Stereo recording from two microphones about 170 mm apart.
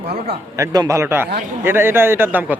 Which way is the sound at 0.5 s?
20° right (ahead or behind).